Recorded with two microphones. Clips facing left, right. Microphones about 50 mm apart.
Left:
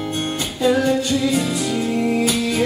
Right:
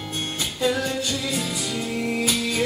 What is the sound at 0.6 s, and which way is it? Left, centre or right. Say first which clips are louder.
Music: left 7 dB; centre.